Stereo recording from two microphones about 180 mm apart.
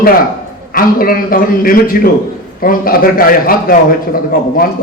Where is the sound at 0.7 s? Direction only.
55° left (ahead or behind).